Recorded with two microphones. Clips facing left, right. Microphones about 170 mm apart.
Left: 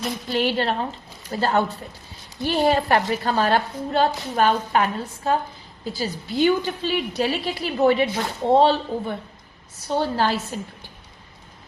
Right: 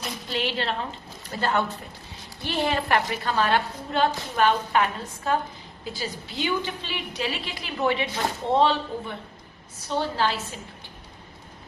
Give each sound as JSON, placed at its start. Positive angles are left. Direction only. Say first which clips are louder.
{"t": 0.3, "sound": "a woman's voice", "louder": "left 6 dB", "side_deg": 45}